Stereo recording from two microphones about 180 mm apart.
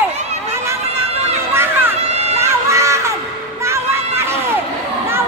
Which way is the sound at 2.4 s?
15° right (ahead or behind).